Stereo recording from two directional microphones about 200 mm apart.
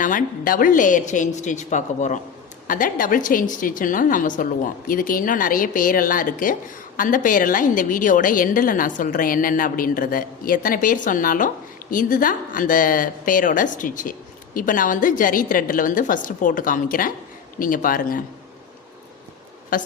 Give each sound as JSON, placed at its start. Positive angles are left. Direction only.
{"t": 0.0, "sound": "a woman's voice", "side_deg": 40}
{"t": 19.7, "sound": "a woman's voice", "side_deg": 45}